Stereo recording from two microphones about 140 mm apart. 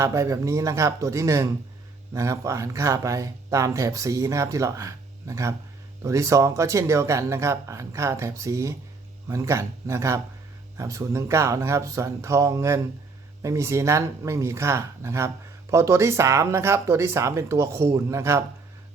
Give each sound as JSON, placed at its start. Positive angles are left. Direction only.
{"t": 0.0, "sound": "speech", "side_deg": -20}